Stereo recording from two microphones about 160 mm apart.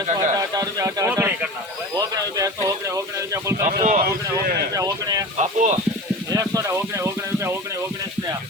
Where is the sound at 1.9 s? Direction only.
20° right (ahead or behind).